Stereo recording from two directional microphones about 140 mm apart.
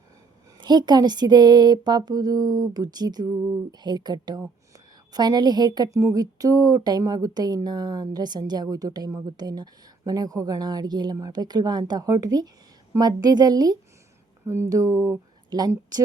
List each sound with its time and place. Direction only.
0.6 s speech: 30° right (ahead or behind)